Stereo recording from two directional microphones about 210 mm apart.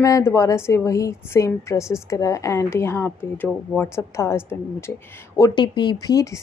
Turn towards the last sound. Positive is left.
turn(degrees=15)  # may be behind; listen again after turning